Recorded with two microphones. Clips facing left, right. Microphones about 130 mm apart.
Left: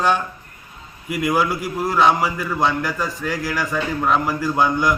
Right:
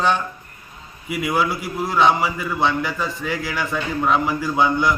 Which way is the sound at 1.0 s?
5° right (ahead or behind).